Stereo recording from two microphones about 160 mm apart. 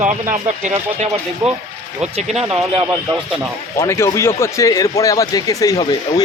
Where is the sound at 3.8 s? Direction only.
15° left (ahead or behind).